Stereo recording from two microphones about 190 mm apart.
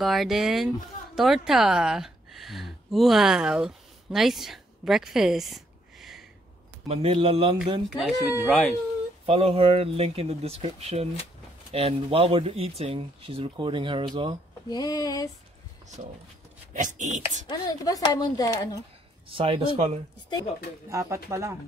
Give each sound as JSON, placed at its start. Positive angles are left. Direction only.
{"t": 0.0, "sound": "speech", "side_deg": 0}
{"t": 6.9, "sound": "speech", "side_deg": -30}
{"t": 8.5, "sound": "speech", "side_deg": 0}
{"t": 9.2, "sound": "speech", "side_deg": -30}
{"t": 14.7, "sound": "speech", "side_deg": 20}
{"t": 16.7, "sound": "speech", "side_deg": -40}
{"t": 17.5, "sound": "speech", "side_deg": 20}
{"t": 19.2, "sound": "speech", "side_deg": -30}
{"t": 20.9, "sound": "speech", "side_deg": -15}